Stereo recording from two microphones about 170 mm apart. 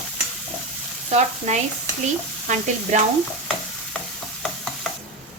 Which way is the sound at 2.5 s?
45° right (ahead or behind).